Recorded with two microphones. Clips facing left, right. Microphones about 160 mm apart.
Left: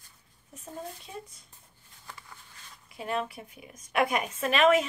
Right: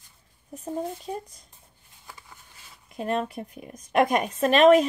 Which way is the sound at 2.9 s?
45° right (ahead or behind).